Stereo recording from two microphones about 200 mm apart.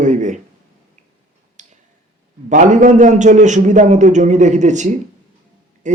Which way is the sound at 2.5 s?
40° right (ahead or behind).